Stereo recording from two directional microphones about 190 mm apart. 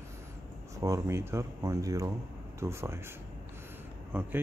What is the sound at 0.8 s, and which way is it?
Speech, 15° right (ahead or behind).